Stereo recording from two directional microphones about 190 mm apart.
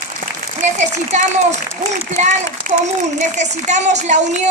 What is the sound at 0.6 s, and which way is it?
A woman's voice, 40° right (ahead or behind).